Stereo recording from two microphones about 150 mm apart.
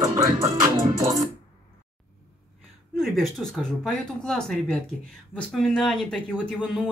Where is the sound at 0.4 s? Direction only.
25° right (ahead or behind).